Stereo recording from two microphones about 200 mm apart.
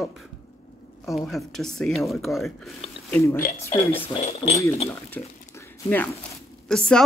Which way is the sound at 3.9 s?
25° left (ahead or behind).